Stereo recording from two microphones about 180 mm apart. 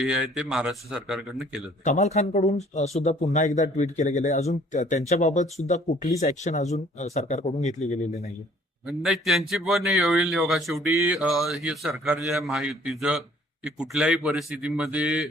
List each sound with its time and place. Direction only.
0.0 s speech: 5° right (ahead or behind)
1.8 s speech: 40° left (ahead or behind)
8.9 s speech: centre (ahead or behind)